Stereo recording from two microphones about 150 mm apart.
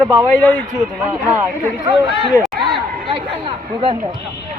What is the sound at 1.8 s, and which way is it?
Speech, 30° right (ahead or behind).